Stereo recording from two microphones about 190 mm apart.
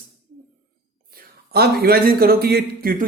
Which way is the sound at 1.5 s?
55° right (ahead or behind).